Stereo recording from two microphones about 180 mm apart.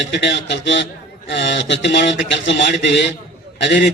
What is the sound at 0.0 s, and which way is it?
A man's voice, 80° left.